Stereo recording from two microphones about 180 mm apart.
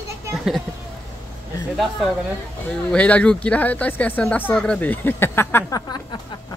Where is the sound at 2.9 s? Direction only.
5° left (ahead or behind).